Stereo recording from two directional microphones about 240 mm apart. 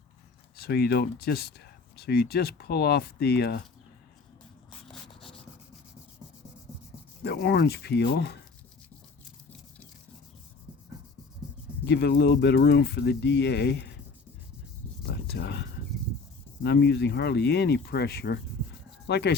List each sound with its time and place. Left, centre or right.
0.5 s speech: left
4.9 s a sound: centre
7.3 s speech: left
11.9 s speech: left
15.1 s a sound: left
16.6 s speech: left